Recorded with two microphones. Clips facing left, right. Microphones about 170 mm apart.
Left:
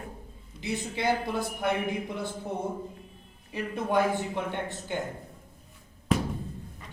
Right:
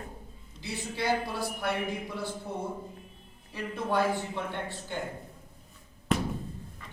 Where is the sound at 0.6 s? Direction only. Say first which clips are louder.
Left 3 dB; 20° left (ahead or behind).